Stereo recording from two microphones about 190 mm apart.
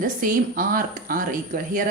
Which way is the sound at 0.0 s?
45° right (ahead or behind).